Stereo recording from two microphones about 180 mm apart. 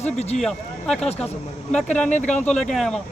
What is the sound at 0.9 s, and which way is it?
Speech, 35° left (ahead or behind).